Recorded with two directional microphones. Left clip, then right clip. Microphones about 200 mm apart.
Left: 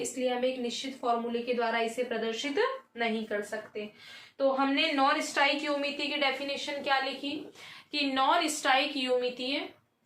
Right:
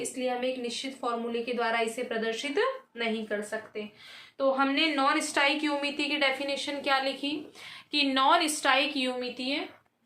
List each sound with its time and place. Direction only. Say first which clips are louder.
0.2 s a woman's voice: left 1 dB; 40° right (ahead or behind)
4.4 s a woman's voice: right 1 dB; 45° right (ahead or behind)
7.9 s a woman's voice: right 3 dB; 45° right (ahead or behind)